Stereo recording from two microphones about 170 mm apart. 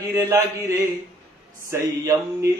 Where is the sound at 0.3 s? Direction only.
20° right (ahead or behind).